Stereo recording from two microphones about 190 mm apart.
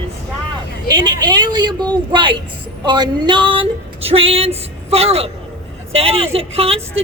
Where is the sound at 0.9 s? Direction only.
25° right (ahead or behind).